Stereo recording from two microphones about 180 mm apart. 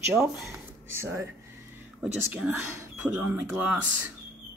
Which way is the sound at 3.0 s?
10° right (ahead or behind).